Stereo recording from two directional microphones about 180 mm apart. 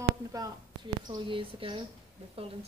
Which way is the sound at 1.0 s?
25° right (ahead or behind).